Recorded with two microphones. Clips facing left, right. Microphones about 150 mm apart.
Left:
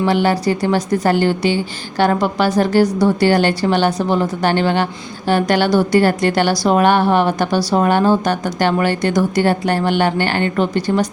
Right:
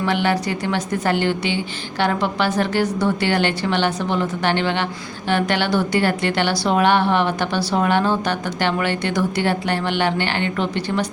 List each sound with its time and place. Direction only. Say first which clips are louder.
0.0 s a woman's voice: left 5 dB; 35° left (ahead or behind)